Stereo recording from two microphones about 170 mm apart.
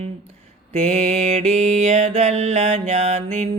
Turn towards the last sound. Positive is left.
turn(degrees=-45)  # may be behind; listen again after turning